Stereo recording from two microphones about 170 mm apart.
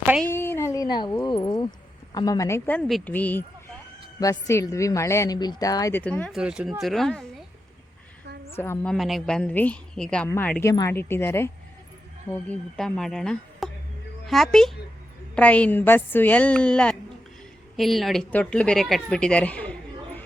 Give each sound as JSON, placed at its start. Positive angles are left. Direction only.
{"t": 0.3, "sound": "a sound", "side_deg": 15}
{"t": 2.1, "sound": "speech", "side_deg": 20}
{"t": 2.8, "sound": "a woman's voice", "side_deg": 0}
{"t": 6.4, "sound": "a woman's voice", "side_deg": -5}
{"t": 8.5, "sound": "speech", "side_deg": 15}
{"t": 8.9, "sound": "a woman's voice", "side_deg": 0}